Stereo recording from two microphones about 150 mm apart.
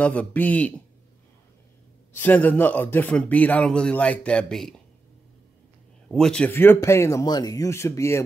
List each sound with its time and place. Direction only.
0.0 s speech: 10° left (ahead or behind)
2.1 s speech: 10° left (ahead or behind)
6.0 s speech: 5° left (ahead or behind)